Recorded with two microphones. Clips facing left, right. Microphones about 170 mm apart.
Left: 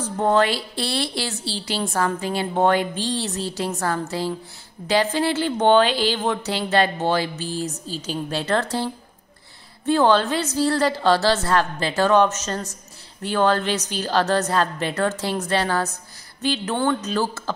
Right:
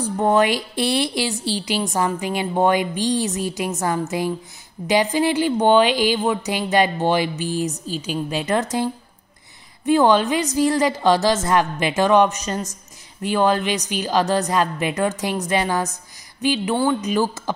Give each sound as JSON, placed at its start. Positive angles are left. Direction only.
{"t": 0.0, "sound": "a woman's voice", "side_deg": -15}